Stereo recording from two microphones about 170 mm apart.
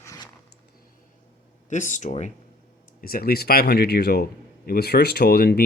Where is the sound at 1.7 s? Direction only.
45° left (ahead or behind).